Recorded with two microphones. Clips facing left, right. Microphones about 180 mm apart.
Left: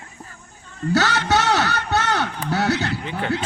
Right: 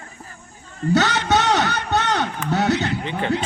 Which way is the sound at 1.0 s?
20° right (ahead or behind).